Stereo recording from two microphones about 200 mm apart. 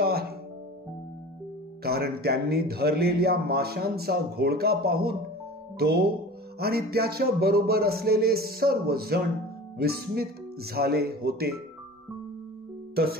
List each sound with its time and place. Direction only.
0.0 s music: 50° right (ahead or behind)
1.8 s speech: 50° right (ahead or behind)
12.9 s speech: 50° right (ahead or behind)